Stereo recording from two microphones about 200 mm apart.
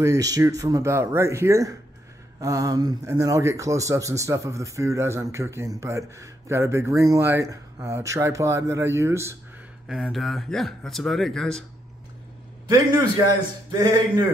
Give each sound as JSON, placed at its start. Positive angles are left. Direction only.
{"t": 0.0, "sound": "a man's voice", "side_deg": -15}
{"t": 9.8, "sound": "speech", "side_deg": 0}
{"t": 13.7, "sound": "a man's voice", "side_deg": -20}